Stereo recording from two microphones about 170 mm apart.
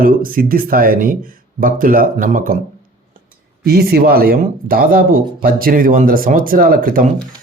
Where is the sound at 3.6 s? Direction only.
65° right (ahead or behind).